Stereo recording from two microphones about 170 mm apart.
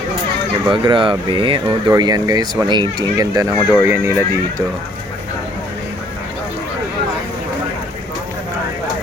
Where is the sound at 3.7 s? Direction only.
10° right (ahead or behind).